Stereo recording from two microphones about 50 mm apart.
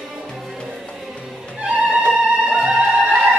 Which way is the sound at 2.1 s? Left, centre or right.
Centre.